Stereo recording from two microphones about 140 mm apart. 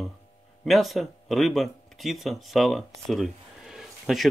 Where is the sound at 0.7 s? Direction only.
Centre (ahead or behind).